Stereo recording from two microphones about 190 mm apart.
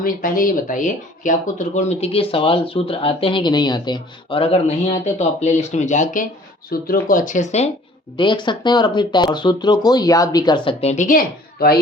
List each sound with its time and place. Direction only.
0.0 s speech: 45° left (ahead or behind)
8.1 s speech: 25° left (ahead or behind); by 11.8 s 50° left (ahead or behind)